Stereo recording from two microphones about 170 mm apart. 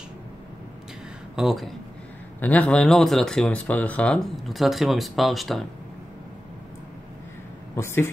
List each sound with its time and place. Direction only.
1.3 s speech: centre (ahead or behind)
2.4 s speech: 10° left (ahead or behind)
7.7 s speech: 15° left (ahead or behind)